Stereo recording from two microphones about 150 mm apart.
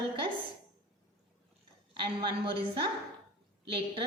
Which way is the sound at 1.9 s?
35° right (ahead or behind).